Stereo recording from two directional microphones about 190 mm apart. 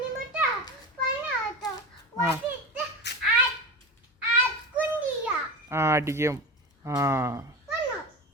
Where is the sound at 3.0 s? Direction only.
65° left (ahead or behind).